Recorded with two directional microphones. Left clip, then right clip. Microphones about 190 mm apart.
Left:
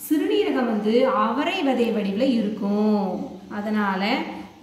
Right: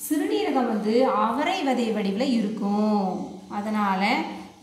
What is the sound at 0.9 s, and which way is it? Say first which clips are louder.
A woman's voice: left 1 dB; 40° right (ahead or behind).